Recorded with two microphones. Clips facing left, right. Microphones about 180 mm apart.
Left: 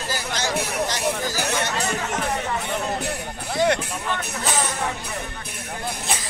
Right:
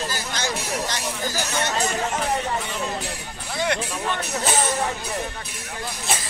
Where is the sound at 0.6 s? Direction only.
60° left (ahead or behind).